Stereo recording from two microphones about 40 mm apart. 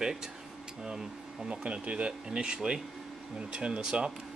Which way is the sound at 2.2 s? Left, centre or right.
Right.